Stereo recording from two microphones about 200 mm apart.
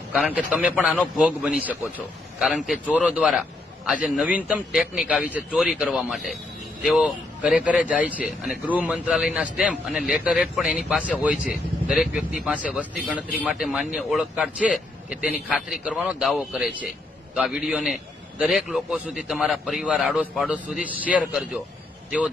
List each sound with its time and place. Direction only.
0.1 s a man's voice: 5° right (ahead or behind)